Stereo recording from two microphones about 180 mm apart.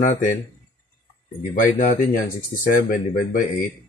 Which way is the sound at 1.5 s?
50° left (ahead or behind).